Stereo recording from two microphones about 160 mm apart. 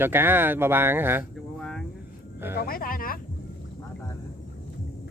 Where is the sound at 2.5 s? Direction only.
65° left (ahead or behind).